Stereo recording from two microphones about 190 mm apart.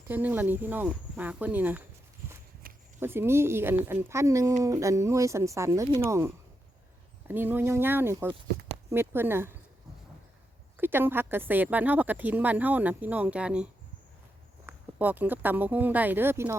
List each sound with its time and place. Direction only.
0.1 s a woman's voice: 10° right (ahead or behind)
2.6 s a sound: 50° right (ahead or behind)
3.0 s a woman's voice: 10° right (ahead or behind)
10.8 s a woman's voice: 10° right (ahead or behind)
14.7 s a woman's voice: 10° right (ahead or behind)